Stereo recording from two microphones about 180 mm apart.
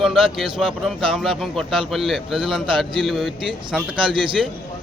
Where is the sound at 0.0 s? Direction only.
Centre (ahead or behind).